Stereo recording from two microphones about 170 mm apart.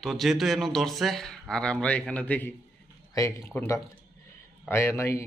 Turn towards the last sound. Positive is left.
turn(degrees=15)  # may be behind; listen again after turning